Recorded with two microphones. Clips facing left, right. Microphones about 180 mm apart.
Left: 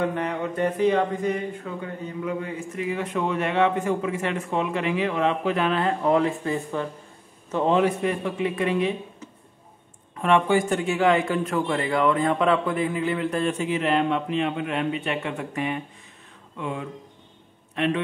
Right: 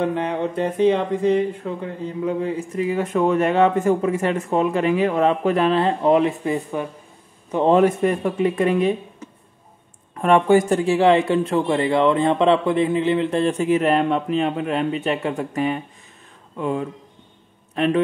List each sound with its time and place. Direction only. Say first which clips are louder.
0.0 s speech: right 4 dB; 25° right (ahead or behind)
7.6 s speech: right 5 dB; 45° right (ahead or behind)
10.2 s speech: right 5 dB; 45° right (ahead or behind)
13.6 s speech: right 5 dB; 45° right (ahead or behind)